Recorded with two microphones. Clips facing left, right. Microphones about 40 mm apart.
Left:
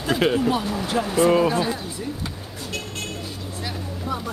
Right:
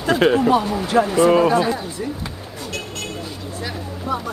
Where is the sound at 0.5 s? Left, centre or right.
Centre.